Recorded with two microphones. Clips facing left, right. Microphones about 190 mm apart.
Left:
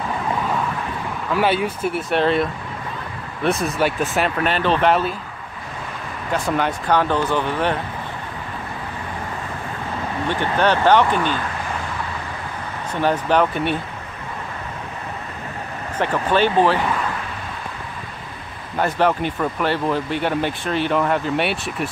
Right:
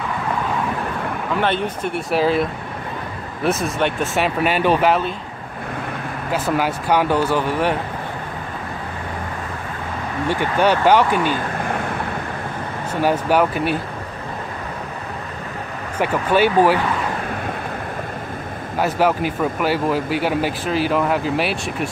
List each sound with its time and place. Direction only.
1.4 s speech: 5° left (ahead or behind)
3.4 s speech: centre (ahead or behind)
6.3 s speech: 5° right (ahead or behind)
10.2 s speech: 10° right (ahead or behind)
12.9 s speech: 10° right (ahead or behind)
16.0 s speech: 10° right (ahead or behind)
18.8 s speech: 5° right (ahead or behind)